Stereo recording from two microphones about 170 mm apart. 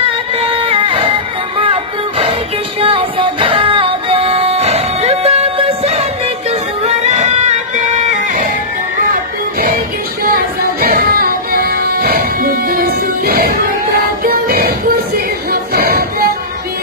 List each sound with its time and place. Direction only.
0.4 s a sound: 35° right (ahead or behind)
1.6 s music: 35° right (ahead or behind)
10.3 s music: 60° right (ahead or behind)